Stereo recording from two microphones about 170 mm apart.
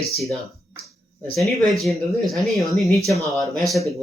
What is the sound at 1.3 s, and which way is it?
Speech, centre (ahead or behind).